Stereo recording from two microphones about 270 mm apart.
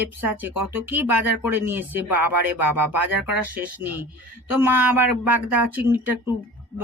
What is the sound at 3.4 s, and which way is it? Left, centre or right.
Speech, centre.